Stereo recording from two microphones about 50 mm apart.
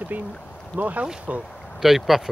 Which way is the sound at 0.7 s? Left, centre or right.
Right.